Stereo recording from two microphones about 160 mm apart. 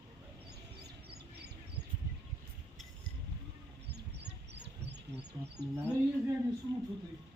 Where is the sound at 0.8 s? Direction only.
90° right.